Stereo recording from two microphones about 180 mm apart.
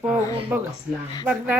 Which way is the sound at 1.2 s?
10° right (ahead or behind).